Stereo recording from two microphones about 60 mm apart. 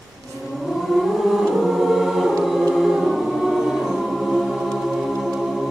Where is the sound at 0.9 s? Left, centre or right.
Centre.